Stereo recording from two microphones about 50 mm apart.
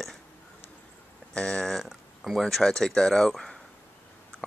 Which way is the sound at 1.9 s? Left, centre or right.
Centre.